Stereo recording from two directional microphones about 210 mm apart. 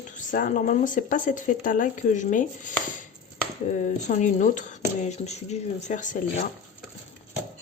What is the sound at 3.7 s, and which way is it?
A woman's voice, 35° left (ahead or behind).